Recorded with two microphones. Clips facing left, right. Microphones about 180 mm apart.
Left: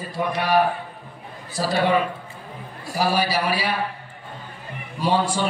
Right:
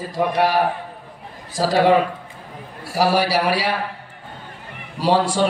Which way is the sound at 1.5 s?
90° right.